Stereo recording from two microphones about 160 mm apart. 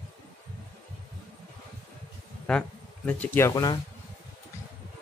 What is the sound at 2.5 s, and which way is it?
Speech, 5° left (ahead or behind).